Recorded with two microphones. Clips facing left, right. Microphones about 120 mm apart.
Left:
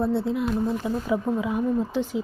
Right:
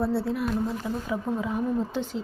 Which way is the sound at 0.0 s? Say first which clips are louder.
Left 2 dB; 20° left (ahead or behind).